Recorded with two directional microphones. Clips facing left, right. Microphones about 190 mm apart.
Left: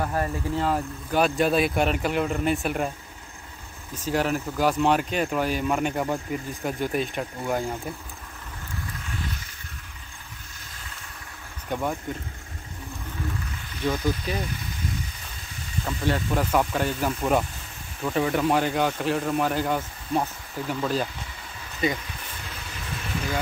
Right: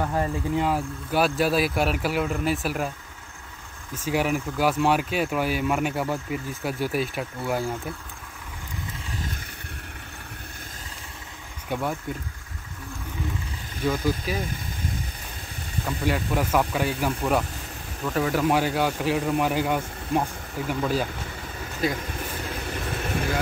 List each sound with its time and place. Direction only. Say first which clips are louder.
0.1 s speech: right 2 dB; 15° right (ahead or behind)
3.9 s speech: even; 10° right (ahead or behind)
11.7 s speech: even; 5° right (ahead or behind)
13.8 s speech: right 1 dB; 5° right (ahead or behind)
16.1 s speech: even; 10° right (ahead or behind)
17.2 s speech: left 1 dB; 5° left (ahead or behind)
22.5 s vehicle: right 4 dB; 50° right (ahead or behind)